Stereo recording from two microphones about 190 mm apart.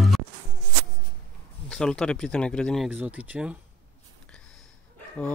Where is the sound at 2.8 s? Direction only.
5° right (ahead or behind).